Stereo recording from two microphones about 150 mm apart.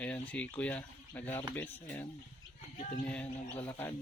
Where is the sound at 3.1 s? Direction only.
10° left (ahead or behind).